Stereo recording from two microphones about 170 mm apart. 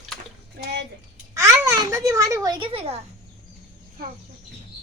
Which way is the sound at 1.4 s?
20° right (ahead or behind).